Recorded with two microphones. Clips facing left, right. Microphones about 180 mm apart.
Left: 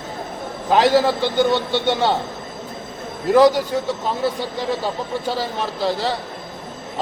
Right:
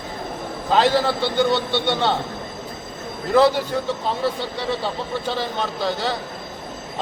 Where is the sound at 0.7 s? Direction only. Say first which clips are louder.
Left 3 dB; 15° left (ahead or behind).